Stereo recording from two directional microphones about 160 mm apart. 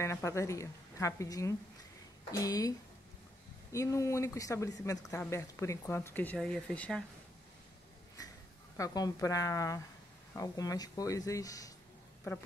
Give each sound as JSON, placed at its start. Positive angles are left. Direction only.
{"t": 0.0, "sound": "a woman's voice", "side_deg": 15}
{"t": 3.7, "sound": "a woman's voice", "side_deg": 20}
{"t": 8.7, "sound": "a woman's voice", "side_deg": 20}